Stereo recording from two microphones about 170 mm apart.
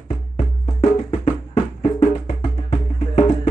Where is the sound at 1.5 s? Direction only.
35° left (ahead or behind).